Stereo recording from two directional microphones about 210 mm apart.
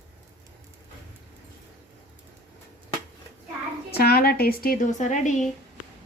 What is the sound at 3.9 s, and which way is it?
Speech, 50° left (ahead or behind).